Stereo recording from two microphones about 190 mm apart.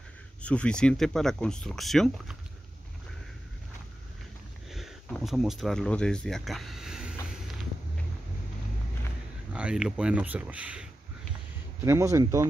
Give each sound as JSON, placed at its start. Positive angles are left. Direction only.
{"t": 0.4, "sound": "speech", "side_deg": 5}
{"t": 4.6, "sound": "speech", "side_deg": 0}
{"t": 9.5, "sound": "speech", "side_deg": -5}